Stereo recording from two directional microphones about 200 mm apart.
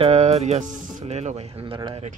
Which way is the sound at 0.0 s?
30° right (ahead or behind).